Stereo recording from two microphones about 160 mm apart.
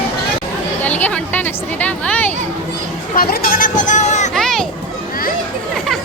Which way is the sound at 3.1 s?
70° left (ahead or behind).